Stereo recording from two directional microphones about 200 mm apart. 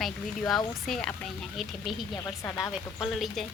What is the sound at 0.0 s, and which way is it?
Speech, centre (ahead or behind).